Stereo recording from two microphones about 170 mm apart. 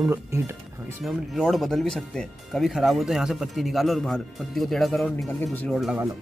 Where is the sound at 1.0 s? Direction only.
Centre (ahead or behind).